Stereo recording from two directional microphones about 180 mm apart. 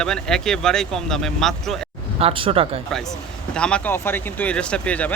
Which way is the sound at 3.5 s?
5° left (ahead or behind).